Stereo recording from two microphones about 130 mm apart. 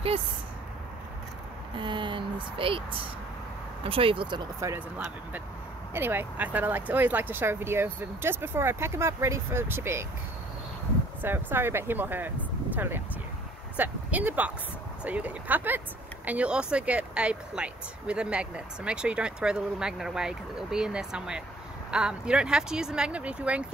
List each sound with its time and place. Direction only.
1.8 s speech: 35° right (ahead or behind)
4.6 s speech: 25° right (ahead or behind)
5.9 s speech: 15° right (ahead or behind)
11.2 s speech: 15° right (ahead or behind)